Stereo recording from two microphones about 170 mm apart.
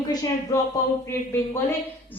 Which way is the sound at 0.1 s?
20° left (ahead or behind).